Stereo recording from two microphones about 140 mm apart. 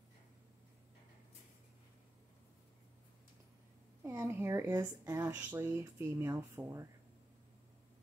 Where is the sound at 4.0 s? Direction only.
20° right (ahead or behind).